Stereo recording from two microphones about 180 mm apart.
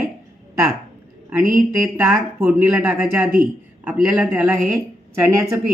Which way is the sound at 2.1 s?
5° right (ahead or behind).